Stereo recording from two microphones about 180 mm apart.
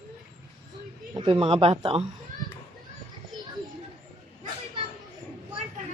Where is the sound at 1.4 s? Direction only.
30° right (ahead or behind).